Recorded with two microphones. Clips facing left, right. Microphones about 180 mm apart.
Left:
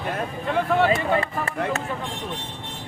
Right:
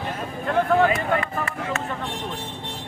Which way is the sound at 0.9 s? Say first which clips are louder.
Left 1 dB; 30° left (ahead or behind).